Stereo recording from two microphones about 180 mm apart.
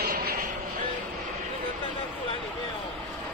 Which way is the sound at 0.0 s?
55° right (ahead or behind).